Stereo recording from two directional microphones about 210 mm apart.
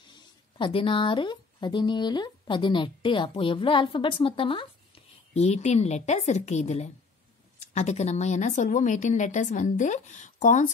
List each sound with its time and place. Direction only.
0.6 s a woman's voice: 25° left (ahead or behind)